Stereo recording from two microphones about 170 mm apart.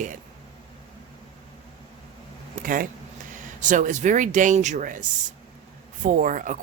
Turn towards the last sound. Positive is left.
turn(degrees=-50)  # may be behind; listen again after turning